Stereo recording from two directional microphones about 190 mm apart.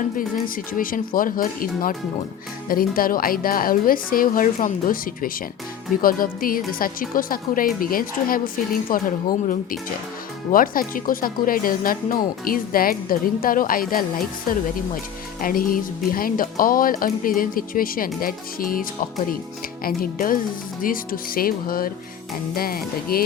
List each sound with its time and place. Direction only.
0.2 s speech: 45° left (ahead or behind)